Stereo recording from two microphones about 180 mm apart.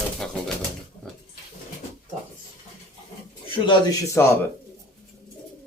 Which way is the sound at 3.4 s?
25° left (ahead or behind).